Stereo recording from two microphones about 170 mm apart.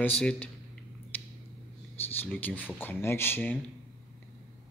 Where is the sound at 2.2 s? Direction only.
10° left (ahead or behind).